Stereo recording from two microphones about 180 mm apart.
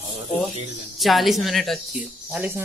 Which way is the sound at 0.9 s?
Centre (ahead or behind).